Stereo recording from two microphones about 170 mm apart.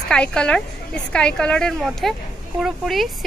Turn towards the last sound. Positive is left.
turn(degrees=0)  # may be behind; listen again after turning